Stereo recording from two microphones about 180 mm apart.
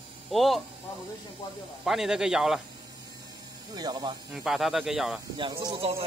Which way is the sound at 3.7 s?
20° right (ahead or behind).